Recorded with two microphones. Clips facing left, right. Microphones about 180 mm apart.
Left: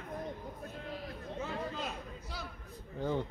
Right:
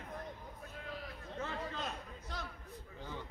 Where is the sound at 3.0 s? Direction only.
55° left (ahead or behind).